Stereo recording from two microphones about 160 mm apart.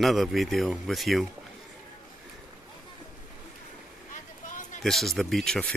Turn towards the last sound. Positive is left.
turn(degrees=5)  # may be behind; listen again after turning